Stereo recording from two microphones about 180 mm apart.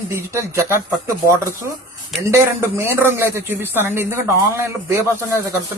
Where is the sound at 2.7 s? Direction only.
15° right (ahead or behind).